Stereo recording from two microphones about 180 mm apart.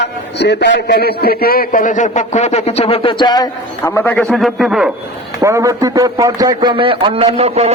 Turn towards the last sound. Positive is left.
turn(degrees=-35)  # may be behind; listen again after turning